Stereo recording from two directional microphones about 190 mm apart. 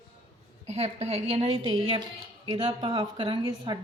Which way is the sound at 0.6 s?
35° right (ahead or behind).